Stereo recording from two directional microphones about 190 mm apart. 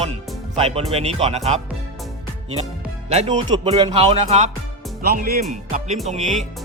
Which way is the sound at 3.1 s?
35° right (ahead or behind).